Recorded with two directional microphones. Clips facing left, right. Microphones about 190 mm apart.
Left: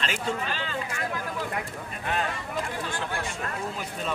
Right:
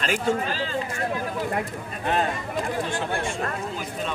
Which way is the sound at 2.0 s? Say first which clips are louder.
Right 5 dB; 35° right (ahead or behind).